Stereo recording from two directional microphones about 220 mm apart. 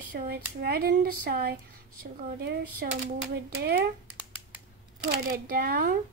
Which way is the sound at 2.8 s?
45° right (ahead or behind).